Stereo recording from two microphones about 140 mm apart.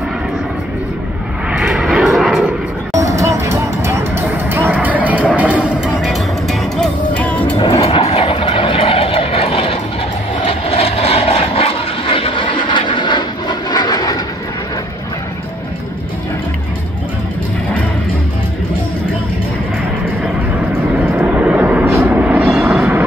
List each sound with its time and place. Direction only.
1.5 s vehicle: 5° right (ahead or behind)
2.9 s music: 25° right (ahead or behind); by 7.5 s 10° left (ahead or behind)
7.5 s vehicle: 45° left (ahead or behind)
21.0 s vehicle: 5° right (ahead or behind)
22.4 s vehicle: centre (ahead or behind)